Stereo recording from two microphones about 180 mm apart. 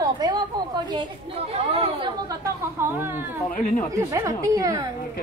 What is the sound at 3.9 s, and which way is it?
Speech, 15° right (ahead or behind).